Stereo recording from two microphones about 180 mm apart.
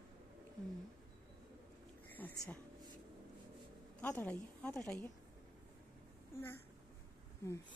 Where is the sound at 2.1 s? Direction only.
10° left (ahead or behind).